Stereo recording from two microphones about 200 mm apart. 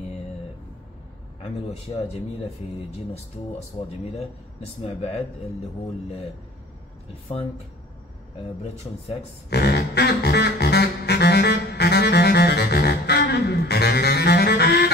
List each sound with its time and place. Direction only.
4.8 s speech: 30° left (ahead or behind)
9.5 s music: 55° left (ahead or behind)